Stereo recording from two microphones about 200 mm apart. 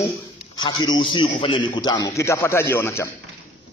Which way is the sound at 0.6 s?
20° left (ahead or behind).